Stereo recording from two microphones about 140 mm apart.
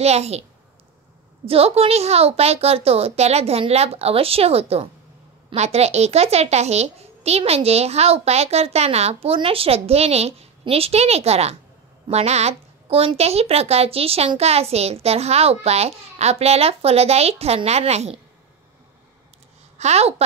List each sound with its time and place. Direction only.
0.0 s a woman's voice: 50° right (ahead or behind)
19.8 s a woman's voice: 50° right (ahead or behind)